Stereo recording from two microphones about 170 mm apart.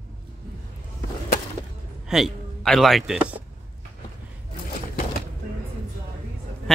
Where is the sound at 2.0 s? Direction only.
Centre (ahead or behind).